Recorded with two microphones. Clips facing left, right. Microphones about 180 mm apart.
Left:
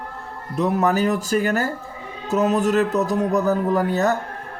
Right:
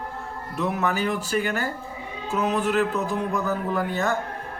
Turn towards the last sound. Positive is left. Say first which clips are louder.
# left 5 dB
turn(degrees=40)  # may be behind; listen again after turning